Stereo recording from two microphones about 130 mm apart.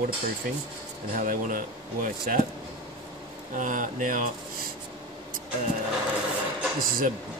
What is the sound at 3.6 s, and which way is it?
Speech, 80° right.